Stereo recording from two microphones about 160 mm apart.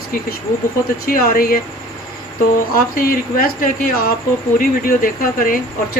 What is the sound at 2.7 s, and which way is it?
Speech, 65° left (ahead or behind).